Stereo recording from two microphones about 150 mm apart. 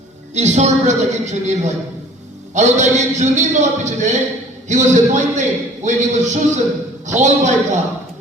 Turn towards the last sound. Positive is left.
turn(degrees=-55)  # may be behind; listen again after turning